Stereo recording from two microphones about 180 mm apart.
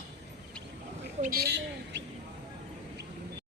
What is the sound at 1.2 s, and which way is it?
Speech, 55° right (ahead or behind).